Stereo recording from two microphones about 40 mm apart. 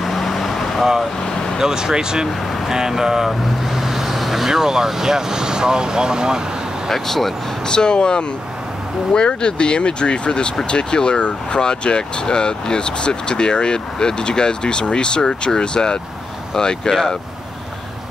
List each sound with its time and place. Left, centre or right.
0.0 s vehicle: centre
1.6 s speech: centre
6.9 s speech: centre
7.6 s speech: left